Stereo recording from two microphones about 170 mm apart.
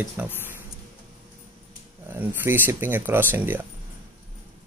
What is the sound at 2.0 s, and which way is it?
Speech, 10° right (ahead or behind).